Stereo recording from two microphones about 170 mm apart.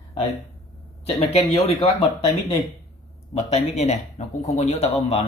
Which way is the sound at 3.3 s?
40° left (ahead or behind).